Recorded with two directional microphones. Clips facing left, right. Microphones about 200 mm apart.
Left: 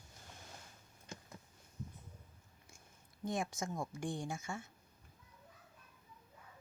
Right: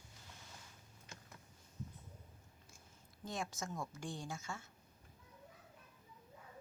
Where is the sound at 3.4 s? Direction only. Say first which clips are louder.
Left 1 dB; 15° left (ahead or behind).